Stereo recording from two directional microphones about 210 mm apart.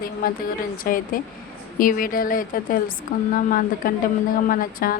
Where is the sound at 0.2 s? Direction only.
45° left (ahead or behind).